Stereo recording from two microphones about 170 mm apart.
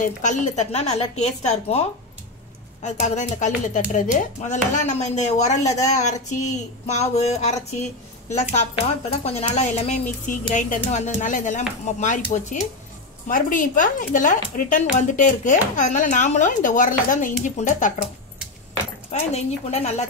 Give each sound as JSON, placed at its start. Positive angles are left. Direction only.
{"t": 0.0, "sound": "speech", "side_deg": 45}
{"t": 2.8, "sound": "speech", "side_deg": 45}
{"t": 5.6, "sound": "speech", "side_deg": 20}
{"t": 5.9, "sound": "a woman's voice", "side_deg": 45}
{"t": 19.0, "sound": "a woman's voice", "side_deg": 40}